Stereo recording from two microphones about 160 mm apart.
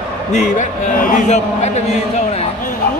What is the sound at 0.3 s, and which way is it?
A man's voice, 55° left (ahead or behind).